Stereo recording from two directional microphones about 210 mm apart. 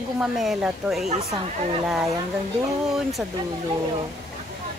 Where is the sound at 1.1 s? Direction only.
30° right (ahead or behind).